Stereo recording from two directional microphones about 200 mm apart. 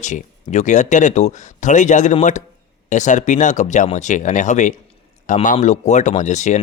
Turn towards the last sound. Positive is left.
turn(degrees=35)  # may be behind; listen again after turning